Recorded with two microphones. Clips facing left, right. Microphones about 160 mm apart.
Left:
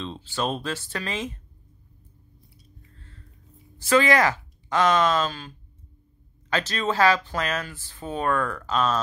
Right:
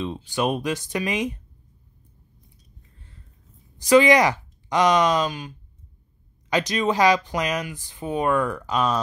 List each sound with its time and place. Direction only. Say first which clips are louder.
0.0 s speech: right 4 dB; 15° right (ahead or behind)
3.7 s speech: right 4 dB; 15° right (ahead or behind)
6.5 s speech: right 4 dB; 15° right (ahead or behind)